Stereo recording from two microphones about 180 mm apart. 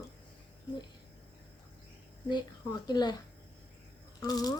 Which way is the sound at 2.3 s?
25° left (ahead or behind).